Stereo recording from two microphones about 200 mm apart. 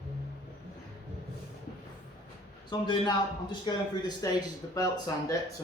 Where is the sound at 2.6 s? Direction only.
25° left (ahead or behind).